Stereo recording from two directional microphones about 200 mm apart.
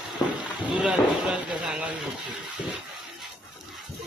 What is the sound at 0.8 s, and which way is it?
Speech, 5° right (ahead or behind).